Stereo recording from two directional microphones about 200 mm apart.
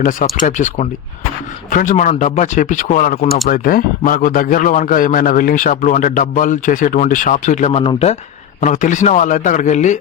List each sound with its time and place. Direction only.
0.3 s a man's voice: 40° left (ahead or behind)